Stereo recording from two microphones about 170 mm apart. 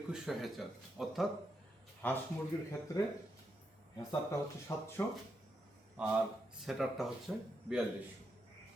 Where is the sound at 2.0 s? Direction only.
10° left (ahead or behind).